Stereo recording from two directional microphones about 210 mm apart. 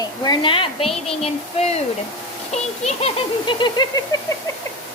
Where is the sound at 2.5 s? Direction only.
30° left (ahead or behind).